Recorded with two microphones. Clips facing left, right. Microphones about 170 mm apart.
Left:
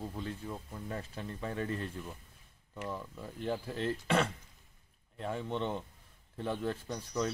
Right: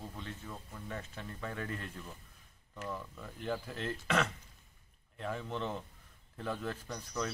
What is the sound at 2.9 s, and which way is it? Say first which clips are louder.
Speech: left 3 dB; 25° left (ahead or behind).